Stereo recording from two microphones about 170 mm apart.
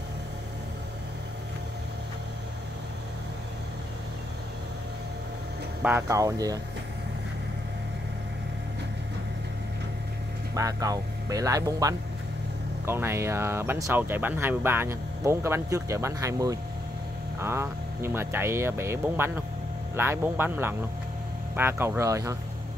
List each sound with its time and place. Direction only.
5.8 s speech: 10° right (ahead or behind)
10.5 s speech: 20° right (ahead or behind)